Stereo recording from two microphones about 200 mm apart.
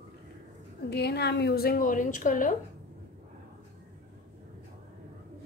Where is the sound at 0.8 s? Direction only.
55° left (ahead or behind).